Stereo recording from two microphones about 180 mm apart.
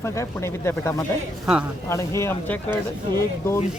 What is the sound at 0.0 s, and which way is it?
Speech, 15° left (ahead or behind).